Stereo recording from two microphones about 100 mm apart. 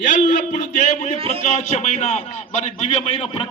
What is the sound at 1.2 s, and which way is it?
Speech, 70° right (ahead or behind).